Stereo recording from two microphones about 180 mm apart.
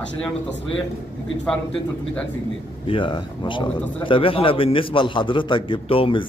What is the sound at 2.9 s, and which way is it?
A man's voice, 25° left (ahead or behind).